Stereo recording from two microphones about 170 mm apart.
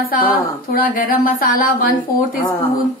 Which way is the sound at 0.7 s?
55° left (ahead or behind).